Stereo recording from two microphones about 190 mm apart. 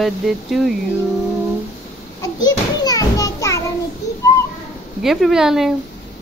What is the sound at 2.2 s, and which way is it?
Children playing, 20° left (ahead or behind).